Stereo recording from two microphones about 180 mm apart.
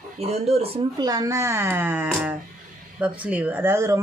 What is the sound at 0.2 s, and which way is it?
Speech, 35° right (ahead or behind).